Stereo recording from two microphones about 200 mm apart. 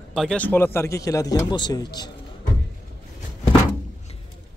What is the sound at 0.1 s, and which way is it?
Speech, centre (ahead or behind).